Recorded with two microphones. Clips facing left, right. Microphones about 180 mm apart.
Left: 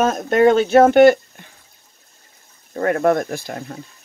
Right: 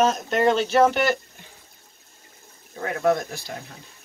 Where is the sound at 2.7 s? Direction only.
55° left (ahead or behind).